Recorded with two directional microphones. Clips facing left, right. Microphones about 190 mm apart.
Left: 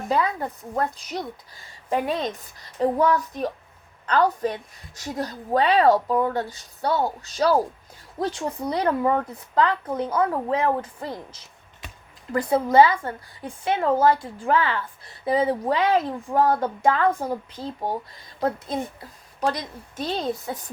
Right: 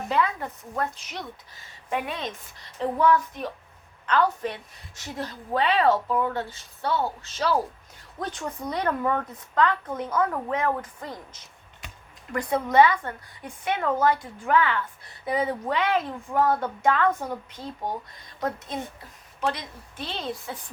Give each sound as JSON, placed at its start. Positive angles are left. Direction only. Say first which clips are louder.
{"t": 0.1, "sound": "a woman's voice", "louder": "left 2 dB", "side_deg": 35}